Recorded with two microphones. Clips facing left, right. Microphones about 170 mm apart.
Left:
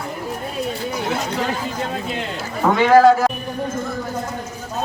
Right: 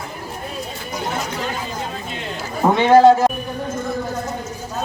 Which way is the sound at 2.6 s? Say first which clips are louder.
Right 1 dB; 25° right (ahead or behind).